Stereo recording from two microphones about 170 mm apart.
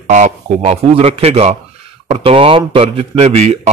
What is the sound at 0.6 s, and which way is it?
Speech, 35° right (ahead or behind).